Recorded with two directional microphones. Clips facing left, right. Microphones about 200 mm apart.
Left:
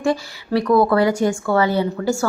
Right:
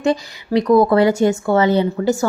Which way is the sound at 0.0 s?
20° right (ahead or behind).